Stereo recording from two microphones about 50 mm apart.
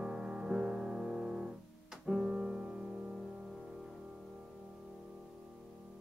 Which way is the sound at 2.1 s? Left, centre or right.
Centre.